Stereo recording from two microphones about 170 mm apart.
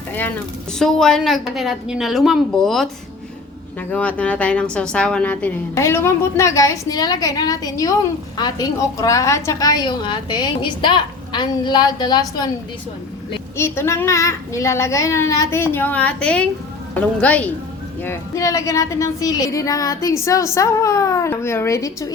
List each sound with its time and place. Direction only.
0.1 s a woman's voice: 10° left (ahead or behind)
13.6 s a woman's voice: 15° left (ahead or behind)